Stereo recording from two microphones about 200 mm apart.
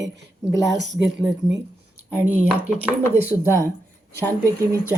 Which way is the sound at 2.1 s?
10° right (ahead or behind).